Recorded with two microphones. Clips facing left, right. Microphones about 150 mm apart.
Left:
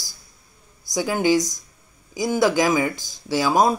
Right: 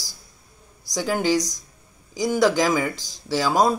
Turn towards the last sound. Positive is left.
turn(degrees=10)  # may be behind; listen again after turning